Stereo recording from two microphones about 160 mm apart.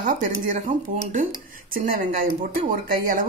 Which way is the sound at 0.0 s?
55° right (ahead or behind).